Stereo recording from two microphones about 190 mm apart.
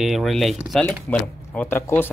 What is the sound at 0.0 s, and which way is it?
Speech, centre (ahead or behind).